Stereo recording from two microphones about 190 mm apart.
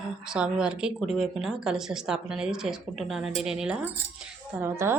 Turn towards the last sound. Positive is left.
turn(degrees=-15)  # may be behind; listen again after turning